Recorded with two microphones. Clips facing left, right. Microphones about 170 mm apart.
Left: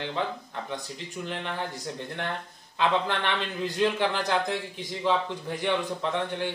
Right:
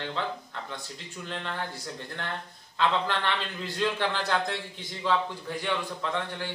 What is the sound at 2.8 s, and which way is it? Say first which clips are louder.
Speech: left 1 dB; 15° left (ahead or behind).